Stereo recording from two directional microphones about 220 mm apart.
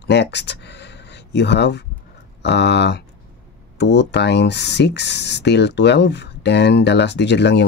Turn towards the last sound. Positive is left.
turn(degrees=50)  # may be behind; listen again after turning